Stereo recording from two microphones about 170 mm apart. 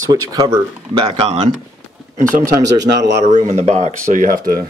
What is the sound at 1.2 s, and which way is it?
Speech, 35° right (ahead or behind).